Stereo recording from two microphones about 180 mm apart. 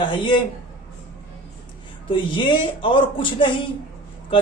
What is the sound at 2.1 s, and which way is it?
Speech, 25° left (ahead or behind).